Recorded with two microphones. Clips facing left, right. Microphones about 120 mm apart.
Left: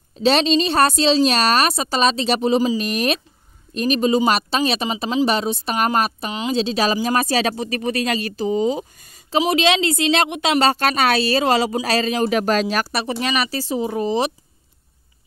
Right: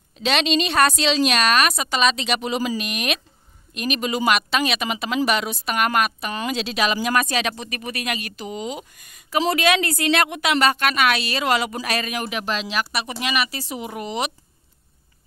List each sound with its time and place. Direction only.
0.2 s a woman's voice: 35° left (ahead or behind)
12.4 s speech: 45° left (ahead or behind)